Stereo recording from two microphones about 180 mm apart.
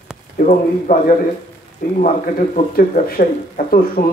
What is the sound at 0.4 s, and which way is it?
Speech, 45° left (ahead or behind).